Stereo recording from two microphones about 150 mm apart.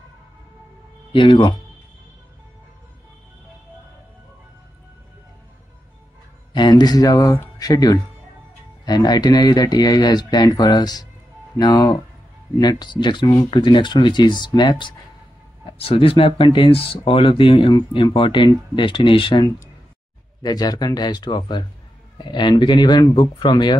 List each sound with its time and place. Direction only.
1.1 s speech: 35° left (ahead or behind)
6.5 s speech: 30° left (ahead or behind)
20.4 s speech: 25° left (ahead or behind)